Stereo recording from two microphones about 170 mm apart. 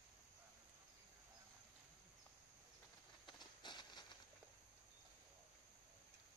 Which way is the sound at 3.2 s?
25° left (ahead or behind).